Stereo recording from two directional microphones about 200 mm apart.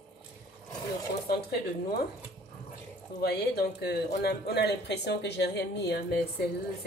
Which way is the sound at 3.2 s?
55° left (ahead or behind).